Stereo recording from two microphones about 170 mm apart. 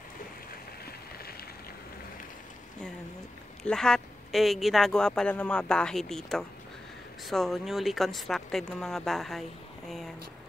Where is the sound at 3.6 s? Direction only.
5° left (ahead or behind).